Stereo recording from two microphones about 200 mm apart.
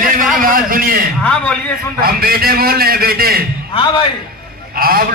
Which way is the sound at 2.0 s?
50° right (ahead or behind).